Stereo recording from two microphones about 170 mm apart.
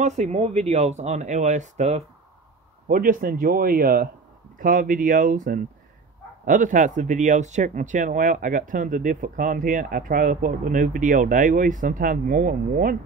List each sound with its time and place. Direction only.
0.0 s speech: 40° right (ahead or behind)
2.9 s speech: 55° right (ahead or behind)